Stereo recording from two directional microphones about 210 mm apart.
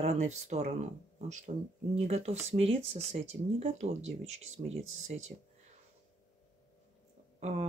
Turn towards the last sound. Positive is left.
turn(degrees=-35)  # may be behind; listen again after turning